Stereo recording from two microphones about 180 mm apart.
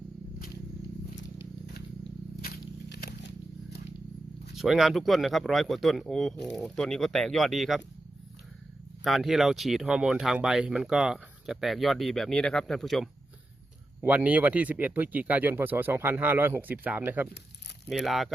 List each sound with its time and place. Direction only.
2.4 s a sound: 55° left (ahead or behind)
4.5 s speech: centre (ahead or behind)
9.0 s speech: centre (ahead or behind)
17.8 s speech: centre (ahead or behind)